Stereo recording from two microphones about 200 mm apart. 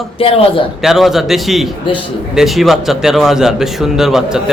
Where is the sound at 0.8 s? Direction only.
Centre (ahead or behind).